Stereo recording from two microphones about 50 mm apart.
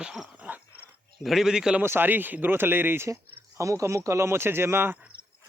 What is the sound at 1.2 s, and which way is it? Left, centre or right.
Speech, centre.